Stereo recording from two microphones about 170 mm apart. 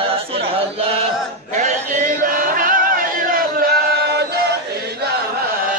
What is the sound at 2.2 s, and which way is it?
Chant, 50° right (ahead or behind).